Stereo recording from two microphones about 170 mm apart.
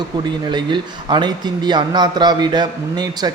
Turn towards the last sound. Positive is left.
turn(degrees=-25)  # may be behind; listen again after turning